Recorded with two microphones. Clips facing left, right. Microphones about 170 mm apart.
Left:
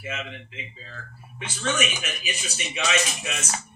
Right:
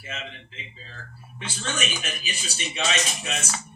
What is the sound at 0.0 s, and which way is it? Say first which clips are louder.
A man's voice: left 4 dB; 30° right (ahead or behind).